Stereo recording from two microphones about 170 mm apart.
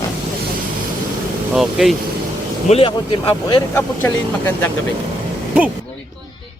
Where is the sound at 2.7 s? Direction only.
30° left (ahead or behind).